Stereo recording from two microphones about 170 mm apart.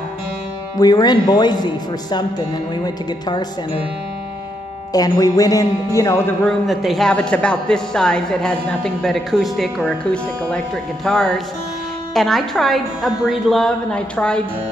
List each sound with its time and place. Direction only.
0.7 s a man's voice: 25° left (ahead or behind)
4.9 s a man's voice: 20° left (ahead or behind)
6.4 s a man's voice: centre (ahead or behind)